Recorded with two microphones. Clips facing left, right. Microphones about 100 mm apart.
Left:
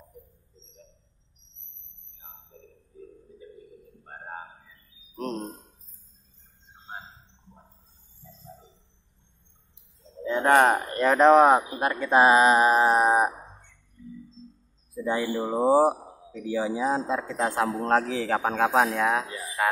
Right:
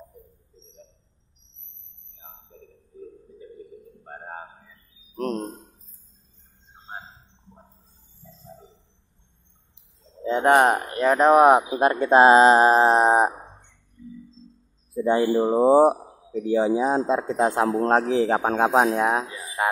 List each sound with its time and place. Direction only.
5.1 s a sound: 45° right (ahead or behind)
10.2 s a sound: 20° right (ahead or behind)
10.9 s speech: 5° right (ahead or behind)
11.8 s speech: 25° right (ahead or behind)
15.0 s speech: 35° right (ahead or behind)
15.5 s speech: 20° right (ahead or behind)